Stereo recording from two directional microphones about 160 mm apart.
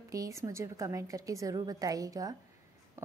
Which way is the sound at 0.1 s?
20° right (ahead or behind).